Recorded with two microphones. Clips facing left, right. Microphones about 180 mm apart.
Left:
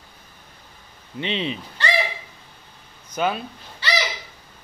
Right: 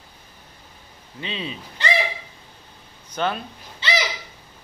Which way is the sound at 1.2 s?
25° left (ahead or behind).